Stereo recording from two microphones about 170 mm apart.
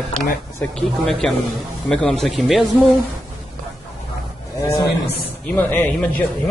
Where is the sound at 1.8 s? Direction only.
5° left (ahead or behind).